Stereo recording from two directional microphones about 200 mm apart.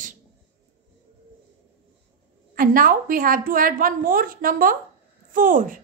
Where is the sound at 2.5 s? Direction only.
45° right (ahead or behind).